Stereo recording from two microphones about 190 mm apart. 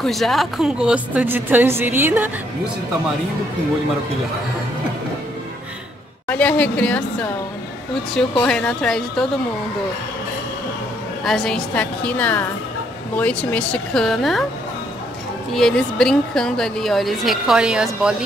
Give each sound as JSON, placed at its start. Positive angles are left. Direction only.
{"t": 0.0, "sound": "a woman's voice", "side_deg": 0}
{"t": 6.2, "sound": "a woman's voice", "side_deg": 10}
{"t": 11.2, "sound": "a woman's voice", "side_deg": 5}
{"t": 15.5, "sound": "a woman's voice", "side_deg": 5}